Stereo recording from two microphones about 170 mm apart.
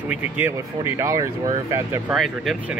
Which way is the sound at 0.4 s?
15° right (ahead or behind).